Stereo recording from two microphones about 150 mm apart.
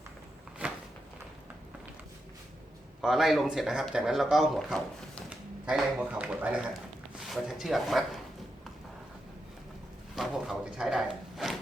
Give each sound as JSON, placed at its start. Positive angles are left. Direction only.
{"t": 0.6, "sound": "a sound", "side_deg": -10}
{"t": 3.0, "sound": "a man's voice", "side_deg": 0}
{"t": 10.2, "sound": "speech", "side_deg": -5}